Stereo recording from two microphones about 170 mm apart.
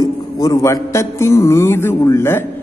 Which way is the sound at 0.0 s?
20° left (ahead or behind).